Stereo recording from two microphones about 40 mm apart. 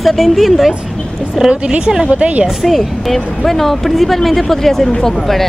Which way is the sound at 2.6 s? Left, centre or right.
Centre.